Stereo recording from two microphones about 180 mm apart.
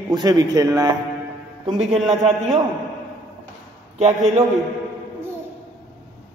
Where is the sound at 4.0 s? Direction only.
40° right (ahead or behind).